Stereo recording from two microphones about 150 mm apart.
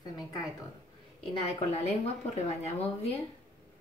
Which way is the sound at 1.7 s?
45° left (ahead or behind).